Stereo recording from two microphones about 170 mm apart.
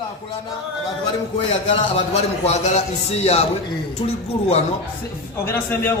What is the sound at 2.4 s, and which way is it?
A man's voice, 40° left (ahead or behind).